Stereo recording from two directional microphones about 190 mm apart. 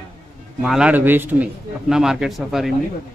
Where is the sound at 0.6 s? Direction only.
5° right (ahead or behind).